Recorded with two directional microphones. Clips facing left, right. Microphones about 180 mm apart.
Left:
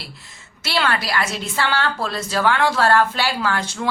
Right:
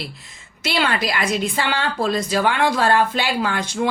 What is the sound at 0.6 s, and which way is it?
Speech, 20° right (ahead or behind).